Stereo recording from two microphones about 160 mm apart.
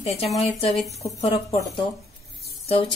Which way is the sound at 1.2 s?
35° left (ahead or behind).